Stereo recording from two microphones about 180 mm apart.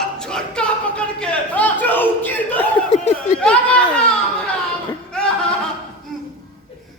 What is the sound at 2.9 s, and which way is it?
Snicker, 35° left (ahead or behind).